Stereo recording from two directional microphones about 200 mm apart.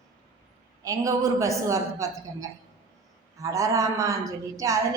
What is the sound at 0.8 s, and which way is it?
A woman's voice, 15° right (ahead or behind).